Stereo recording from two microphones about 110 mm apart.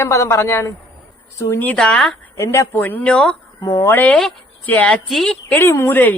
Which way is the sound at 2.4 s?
25° left (ahead or behind).